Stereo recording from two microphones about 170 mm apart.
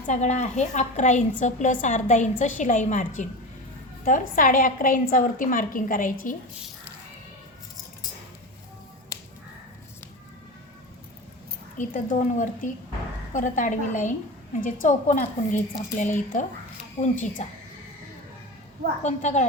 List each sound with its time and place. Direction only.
0.1 s a woman's voice: 45° left (ahead or behind)
11.8 s a woman's voice: 45° left (ahead or behind)
19.0 s a woman's voice: 45° left (ahead or behind)